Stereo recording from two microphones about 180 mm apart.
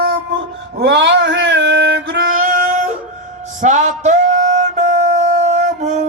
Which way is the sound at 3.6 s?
40° right (ahead or behind).